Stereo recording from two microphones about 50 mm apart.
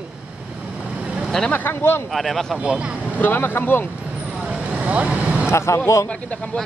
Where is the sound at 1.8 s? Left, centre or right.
Left.